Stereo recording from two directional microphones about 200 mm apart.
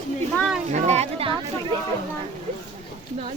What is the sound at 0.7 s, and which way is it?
Speech, 35° right (ahead or behind).